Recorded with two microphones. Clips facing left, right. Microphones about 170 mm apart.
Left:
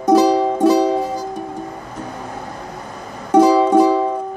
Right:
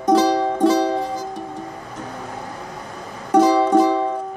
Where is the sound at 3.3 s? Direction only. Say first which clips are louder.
Left 3 dB; 25° left (ahead or behind).